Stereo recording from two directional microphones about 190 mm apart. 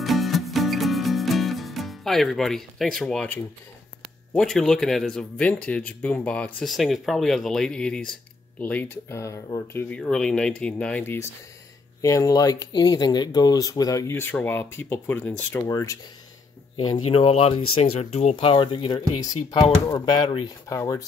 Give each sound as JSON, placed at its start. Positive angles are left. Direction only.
{"t": 0.0, "sound": "music", "side_deg": 0}
{"t": 4.0, "sound": "speech", "side_deg": 0}